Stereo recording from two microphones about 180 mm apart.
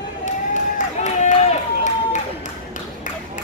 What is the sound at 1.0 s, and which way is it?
Run, 40° left (ahead or behind).